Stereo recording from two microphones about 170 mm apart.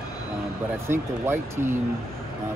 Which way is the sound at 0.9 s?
15° right (ahead or behind).